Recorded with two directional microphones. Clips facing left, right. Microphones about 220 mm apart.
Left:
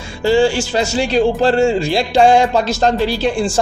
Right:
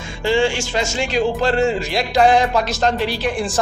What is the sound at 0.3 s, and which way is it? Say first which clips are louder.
A man's voice: left 5 dB; 35° left (ahead or behind).